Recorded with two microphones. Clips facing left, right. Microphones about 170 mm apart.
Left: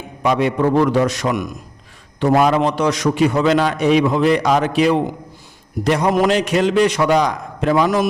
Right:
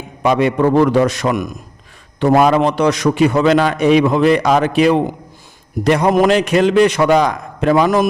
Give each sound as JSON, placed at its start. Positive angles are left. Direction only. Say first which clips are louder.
{"t": 0.2, "sound": "a man's voice", "louder": "right 3 dB", "side_deg": -65}